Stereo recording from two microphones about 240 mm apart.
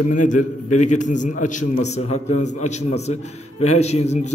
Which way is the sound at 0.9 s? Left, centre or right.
Left.